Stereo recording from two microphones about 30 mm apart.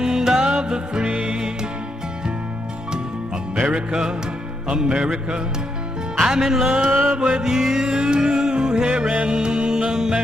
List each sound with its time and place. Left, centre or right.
0.0 s music: centre
3.5 s music: right
6.4 s music: centre